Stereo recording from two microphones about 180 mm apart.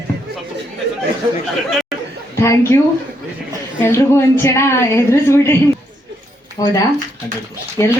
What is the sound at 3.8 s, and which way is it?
A woman's voice, 15° left (ahead or behind).